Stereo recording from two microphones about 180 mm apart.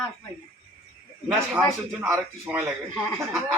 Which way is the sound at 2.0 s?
5° right (ahead or behind).